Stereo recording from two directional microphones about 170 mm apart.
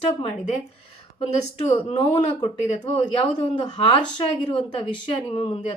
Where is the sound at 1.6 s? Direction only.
35° left (ahead or behind).